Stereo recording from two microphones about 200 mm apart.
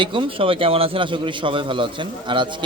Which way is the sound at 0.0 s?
25° right (ahead or behind).